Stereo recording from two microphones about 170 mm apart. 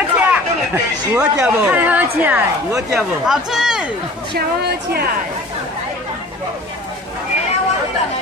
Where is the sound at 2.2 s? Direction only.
10° right (ahead or behind).